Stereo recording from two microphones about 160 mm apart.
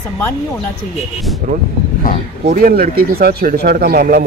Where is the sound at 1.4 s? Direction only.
55° right (ahead or behind).